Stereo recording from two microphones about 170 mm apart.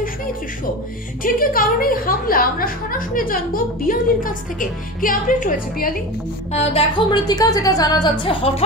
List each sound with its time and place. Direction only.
1.2 s a woman's voice: 55° left (ahead or behind)
6.5 s a woman's voice: 35° left (ahead or behind)
7.1 s a woman's voice: 20° left (ahead or behind)